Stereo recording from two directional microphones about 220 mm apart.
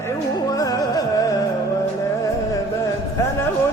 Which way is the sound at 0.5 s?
15° left (ahead or behind).